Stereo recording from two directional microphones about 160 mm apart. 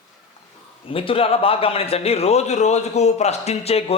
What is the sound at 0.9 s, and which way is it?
A man's voice, 35° left (ahead or behind).